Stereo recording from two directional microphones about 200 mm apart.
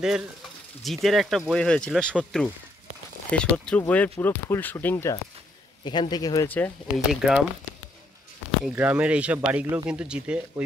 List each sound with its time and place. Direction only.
0.8 s speech: centre (ahead or behind)
7.2 s speech: centre (ahead or behind)
8.7 s speech: 5° right (ahead or behind)